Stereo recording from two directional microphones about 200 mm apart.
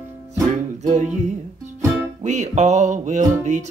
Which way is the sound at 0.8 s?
35° right (ahead or behind).